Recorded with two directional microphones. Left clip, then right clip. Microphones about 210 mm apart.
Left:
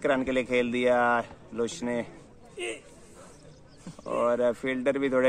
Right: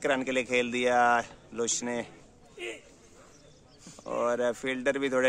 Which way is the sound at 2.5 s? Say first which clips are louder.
Left 4 dB; 50° left (ahead or behind).